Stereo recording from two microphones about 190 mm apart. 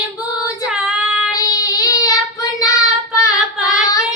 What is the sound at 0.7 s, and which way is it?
Female singing, 5° right (ahead or behind).